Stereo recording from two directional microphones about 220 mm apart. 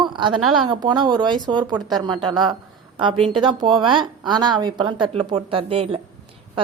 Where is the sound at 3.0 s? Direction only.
25° right (ahead or behind).